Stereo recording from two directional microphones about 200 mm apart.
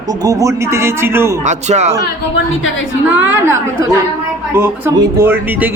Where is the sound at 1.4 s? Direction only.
35° right (ahead or behind).